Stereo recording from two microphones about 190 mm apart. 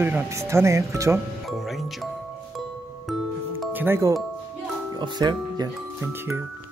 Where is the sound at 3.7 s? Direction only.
10° right (ahead or behind).